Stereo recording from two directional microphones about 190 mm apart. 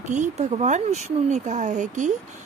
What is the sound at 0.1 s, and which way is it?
Speech, 40° right (ahead or behind).